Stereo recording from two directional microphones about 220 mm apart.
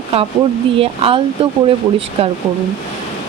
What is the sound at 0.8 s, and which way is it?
Speech, 25° right (ahead or behind).